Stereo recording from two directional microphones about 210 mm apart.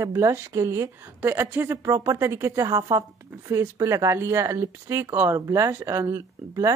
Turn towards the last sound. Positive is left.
turn(degrees=-15)  # may be behind; listen again after turning